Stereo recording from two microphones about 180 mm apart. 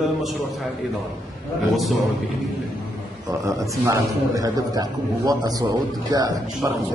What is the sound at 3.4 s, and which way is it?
A man's voice, 15° right (ahead or behind).